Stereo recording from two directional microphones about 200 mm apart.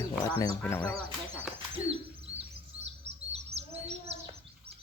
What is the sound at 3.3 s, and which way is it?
Bird, 30° right (ahead or behind).